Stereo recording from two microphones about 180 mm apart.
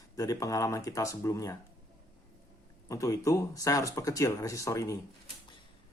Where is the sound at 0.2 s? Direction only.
20° left (ahead or behind).